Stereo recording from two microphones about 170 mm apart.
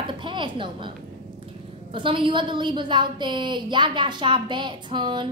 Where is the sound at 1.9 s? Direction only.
30° right (ahead or behind).